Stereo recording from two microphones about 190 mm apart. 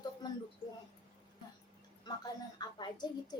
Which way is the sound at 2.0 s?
20° left (ahead or behind).